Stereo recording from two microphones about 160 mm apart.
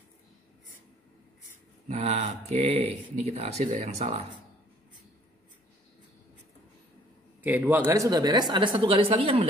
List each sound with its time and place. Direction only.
1.9 s speech: 40° right (ahead or behind)
7.4 s speech: 10° right (ahead or behind); by 9.5 s 35° right (ahead or behind)